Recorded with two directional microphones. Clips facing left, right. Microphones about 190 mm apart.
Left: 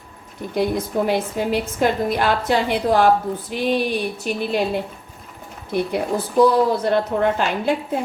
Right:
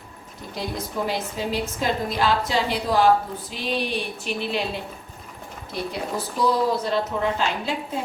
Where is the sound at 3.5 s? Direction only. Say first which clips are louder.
Left 6 dB; 50° left (ahead or behind).